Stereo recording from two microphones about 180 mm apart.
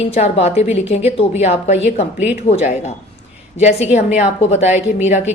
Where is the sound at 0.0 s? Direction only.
35° left (ahead or behind).